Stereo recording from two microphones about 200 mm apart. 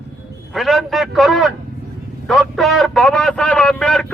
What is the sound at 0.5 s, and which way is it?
A man's voice, centre (ahead or behind).